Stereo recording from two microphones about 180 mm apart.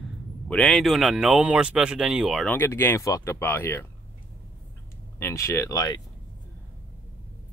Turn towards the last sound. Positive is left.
turn(degrees=20)  # may be behind; listen again after turning